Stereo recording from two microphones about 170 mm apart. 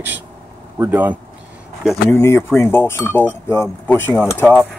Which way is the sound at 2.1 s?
15° left (ahead or behind).